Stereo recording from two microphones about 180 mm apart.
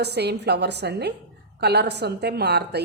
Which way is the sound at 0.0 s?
65° right (ahead or behind).